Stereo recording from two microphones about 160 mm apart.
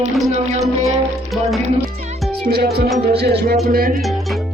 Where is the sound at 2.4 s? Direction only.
80° right.